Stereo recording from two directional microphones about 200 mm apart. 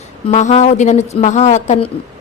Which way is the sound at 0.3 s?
35° left (ahead or behind).